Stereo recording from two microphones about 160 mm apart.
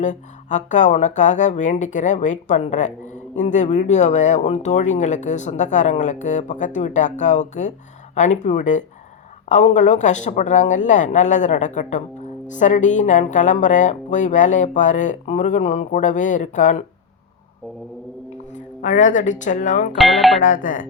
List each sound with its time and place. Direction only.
0.0 s speech: 50° left (ahead or behind)
18.5 s speech: 50° left (ahead or behind)
20.0 s speech: centre (ahead or behind)
20.4 s speech: 55° left (ahead or behind)